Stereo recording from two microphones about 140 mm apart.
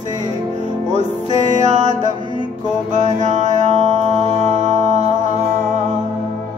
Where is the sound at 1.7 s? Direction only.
60° right (ahead or behind).